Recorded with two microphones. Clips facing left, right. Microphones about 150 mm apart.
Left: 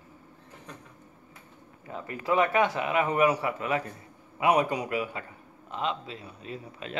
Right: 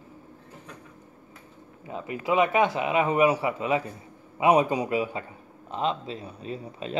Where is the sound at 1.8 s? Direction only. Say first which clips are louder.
Right 2 dB; 20° right (ahead or behind).